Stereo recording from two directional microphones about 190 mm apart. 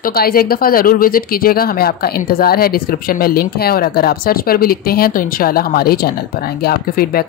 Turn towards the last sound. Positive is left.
turn(degrees=55)  # may be behind; listen again after turning